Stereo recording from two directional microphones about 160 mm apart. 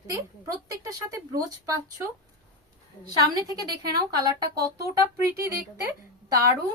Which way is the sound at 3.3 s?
25° right (ahead or behind).